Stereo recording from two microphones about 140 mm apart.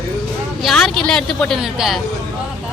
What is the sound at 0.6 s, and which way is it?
Speech, centre (ahead or behind).